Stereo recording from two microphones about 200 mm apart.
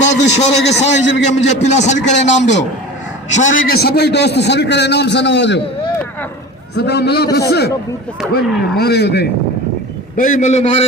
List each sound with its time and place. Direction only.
0.2 s a man's voice: 60° left (ahead or behind)
0.8 s a man's voice: 35° left (ahead or behind); by 5.5 s 60° left (ahead or behind)
6.7 s a man's voice: 55° left (ahead or behind)
8.2 s speech: centre (ahead or behind)
8.8 s a man's voice: 55° left (ahead or behind)
10.2 s a man's voice: 40° left (ahead or behind)